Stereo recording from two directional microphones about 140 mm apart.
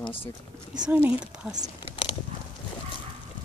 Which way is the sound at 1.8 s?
40° left (ahead or behind).